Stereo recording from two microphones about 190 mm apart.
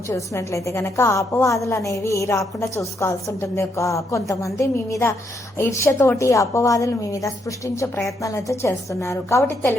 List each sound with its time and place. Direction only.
0.1 s a woman's voice: 15° left (ahead or behind)